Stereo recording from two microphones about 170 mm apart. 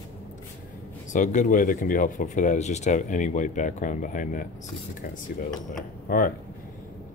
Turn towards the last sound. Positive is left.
turn(degrees=55)  # may be behind; listen again after turning